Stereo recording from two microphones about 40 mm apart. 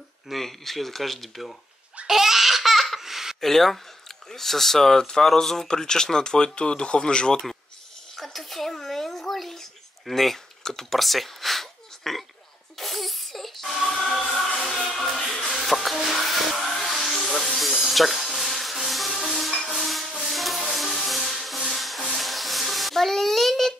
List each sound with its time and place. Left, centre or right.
0.3 s speech: centre
2.0 s laughter: centre
3.3 s speech: centre
8.2 s babbling: centre
10.9 s a sound: centre
12.7 s music: centre
16.0 s a sound: centre
16.7 s music: centre
17.1 s a sound: centre
19.7 s rub: centre
20.2 s music: centre
22.1 s a sound: centre